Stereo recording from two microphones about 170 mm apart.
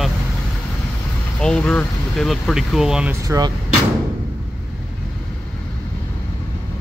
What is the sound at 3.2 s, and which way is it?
Speech, 20° right (ahead or behind).